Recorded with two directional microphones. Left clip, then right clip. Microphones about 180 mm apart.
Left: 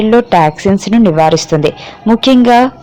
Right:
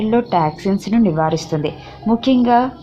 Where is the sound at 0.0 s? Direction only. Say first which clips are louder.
Left 8 dB; 30° left (ahead or behind).